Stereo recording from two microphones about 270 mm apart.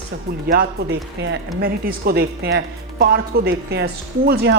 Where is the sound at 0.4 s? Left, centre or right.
Right.